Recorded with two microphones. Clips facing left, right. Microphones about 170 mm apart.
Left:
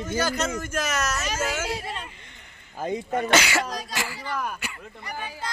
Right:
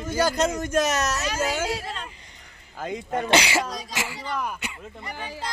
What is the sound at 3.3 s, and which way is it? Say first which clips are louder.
Speech: right 1 dB; 30° right (ahead or behind).